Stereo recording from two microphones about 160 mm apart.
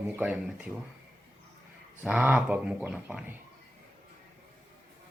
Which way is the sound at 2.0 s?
5° right (ahead or behind).